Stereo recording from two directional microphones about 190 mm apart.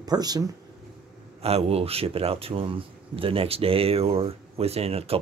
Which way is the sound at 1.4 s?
35° right (ahead or behind).